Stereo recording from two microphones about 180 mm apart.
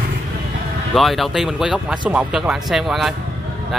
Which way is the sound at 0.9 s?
Centre (ahead or behind).